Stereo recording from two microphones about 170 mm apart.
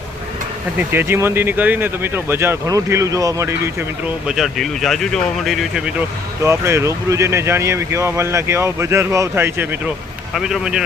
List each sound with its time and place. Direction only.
0.8 s speech: 10° right (ahead or behind)
4.3 s speech: centre (ahead or behind)
6.4 s speech: 15° right (ahead or behind)